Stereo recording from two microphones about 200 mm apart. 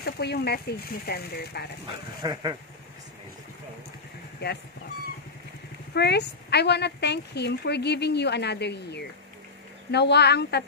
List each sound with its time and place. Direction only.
0.0 s speech: 55° left (ahead or behind)
2.2 s a sound: 20° right (ahead or behind)
4.4 s speech: 55° left (ahead or behind)
5.9 s speech: 55° left (ahead or behind)